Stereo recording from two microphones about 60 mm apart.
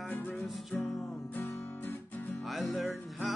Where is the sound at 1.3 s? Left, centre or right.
Left.